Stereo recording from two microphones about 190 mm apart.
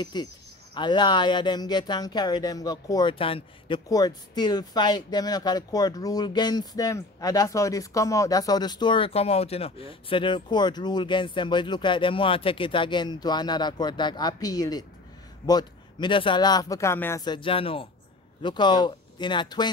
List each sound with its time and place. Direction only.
0.0 s speech: 20° left (ahead or behind)